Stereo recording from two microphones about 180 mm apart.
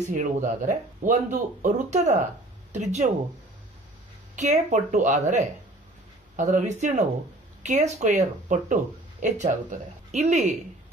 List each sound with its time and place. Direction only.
0.1 s speech: 45° right (ahead or behind)
4.4 s speech: 40° right (ahead or behind)